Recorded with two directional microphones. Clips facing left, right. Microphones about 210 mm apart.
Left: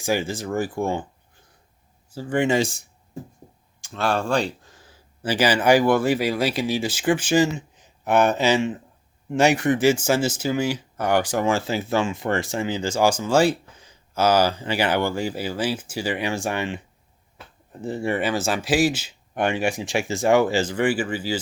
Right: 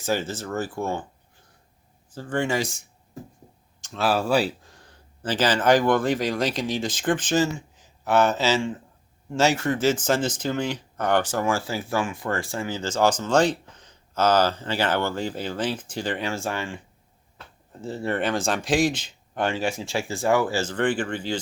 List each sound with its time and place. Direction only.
0.0 s speech: 10° left (ahead or behind)
2.0 s speech: 10° left (ahead or behind); by 2.8 s 30° left (ahead or behind)
3.9 s speech: 5° right (ahead or behind)